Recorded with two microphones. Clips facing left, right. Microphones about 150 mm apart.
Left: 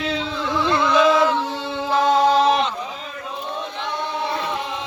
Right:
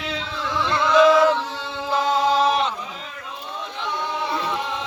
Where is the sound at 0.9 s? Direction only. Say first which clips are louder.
Right 3 dB; 25° left (ahead or behind).